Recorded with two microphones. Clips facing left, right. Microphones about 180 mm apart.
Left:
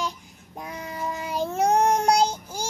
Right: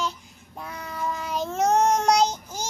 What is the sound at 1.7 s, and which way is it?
Child singing, 55° left (ahead or behind).